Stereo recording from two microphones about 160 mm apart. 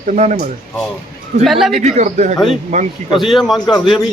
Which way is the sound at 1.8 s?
45° right (ahead or behind).